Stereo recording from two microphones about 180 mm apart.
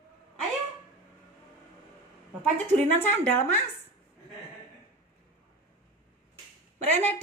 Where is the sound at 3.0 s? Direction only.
10° left (ahead or behind).